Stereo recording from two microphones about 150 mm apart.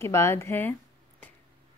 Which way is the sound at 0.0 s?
15° left (ahead or behind).